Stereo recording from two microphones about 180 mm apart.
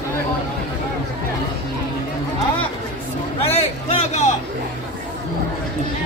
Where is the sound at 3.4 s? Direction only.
35° left (ahead or behind).